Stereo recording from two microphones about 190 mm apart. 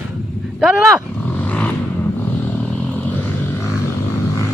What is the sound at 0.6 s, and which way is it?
Speech, 5° right (ahead or behind).